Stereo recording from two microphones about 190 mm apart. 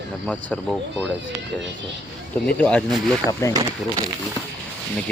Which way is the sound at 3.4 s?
15° left (ahead or behind).